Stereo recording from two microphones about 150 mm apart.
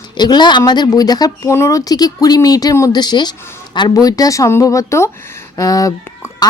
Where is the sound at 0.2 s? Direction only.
30° left (ahead or behind).